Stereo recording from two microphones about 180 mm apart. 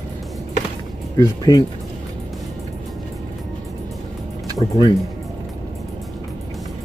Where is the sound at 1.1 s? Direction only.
20° left (ahead or behind).